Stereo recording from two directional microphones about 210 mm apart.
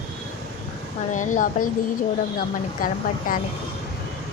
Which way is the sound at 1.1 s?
35° left (ahead or behind).